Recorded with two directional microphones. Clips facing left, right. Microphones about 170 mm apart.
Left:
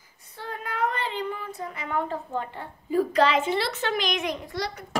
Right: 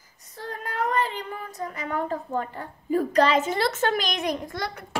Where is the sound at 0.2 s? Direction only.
40° right (ahead or behind).